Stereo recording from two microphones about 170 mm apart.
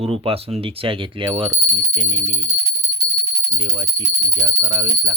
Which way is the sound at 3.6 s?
25° right (ahead or behind).